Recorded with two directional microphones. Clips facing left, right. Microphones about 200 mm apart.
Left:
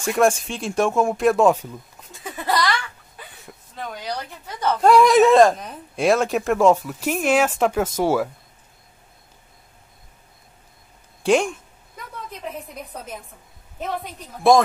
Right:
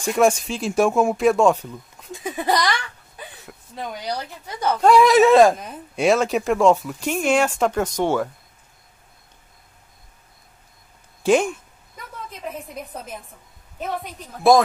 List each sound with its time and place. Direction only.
0.0 s speech: centre (ahead or behind)
2.2 s giggle: 15° right (ahead or behind)
4.5 s speech: 10° right (ahead or behind)
4.7 s speech: centre (ahead or behind)
11.2 s speech: centre (ahead or behind)
14.5 s speech: centre (ahead or behind)